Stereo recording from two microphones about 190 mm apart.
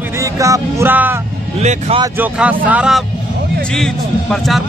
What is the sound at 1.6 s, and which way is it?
Speech, 35° right (ahead or behind).